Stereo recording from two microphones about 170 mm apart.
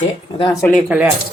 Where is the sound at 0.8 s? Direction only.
5° right (ahead or behind).